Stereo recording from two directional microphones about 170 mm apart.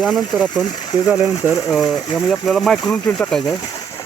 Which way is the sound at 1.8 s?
25° left (ahead or behind).